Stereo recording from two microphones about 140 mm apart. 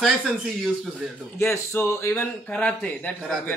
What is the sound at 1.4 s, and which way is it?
Speech, 20° left (ahead or behind).